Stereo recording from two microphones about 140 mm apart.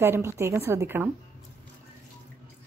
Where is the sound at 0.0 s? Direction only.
15° right (ahead or behind).